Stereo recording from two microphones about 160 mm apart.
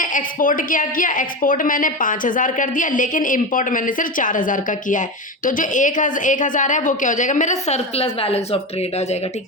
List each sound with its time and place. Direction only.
0.0 s a woman's voice: 55° left (ahead or behind); by 8.4 s 40° left (ahead or behind)